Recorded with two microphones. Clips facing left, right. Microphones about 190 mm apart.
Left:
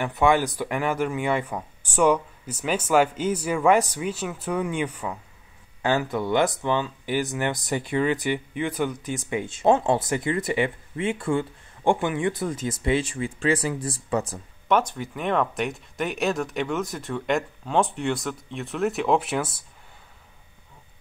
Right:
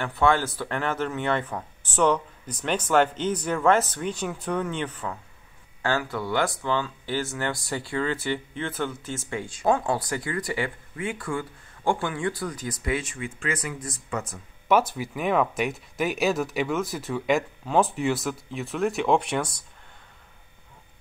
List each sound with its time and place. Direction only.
0.0 s speech: 15° left (ahead or behind); by 14.4 s 35° left (ahead or behind)
14.7 s speech: 5° right (ahead or behind)